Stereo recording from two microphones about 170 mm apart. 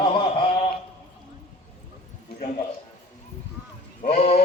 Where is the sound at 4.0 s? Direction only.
40° left (ahead or behind).